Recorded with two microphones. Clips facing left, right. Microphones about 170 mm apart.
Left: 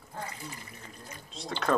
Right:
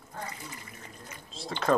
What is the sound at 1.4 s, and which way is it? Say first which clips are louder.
Speech: right 2 dB; centre (ahead or behind).